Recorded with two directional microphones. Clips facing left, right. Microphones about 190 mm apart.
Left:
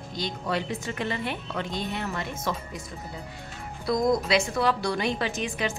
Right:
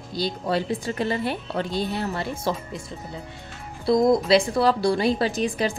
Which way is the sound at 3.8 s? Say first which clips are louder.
Right 5 dB; 30° right (ahead or behind).